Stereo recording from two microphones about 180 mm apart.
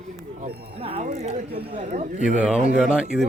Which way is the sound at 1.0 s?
40° right (ahead or behind).